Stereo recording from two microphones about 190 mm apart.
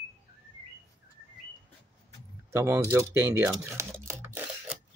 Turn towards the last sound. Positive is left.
turn(degrees=-10)  # may be behind; listen again after turning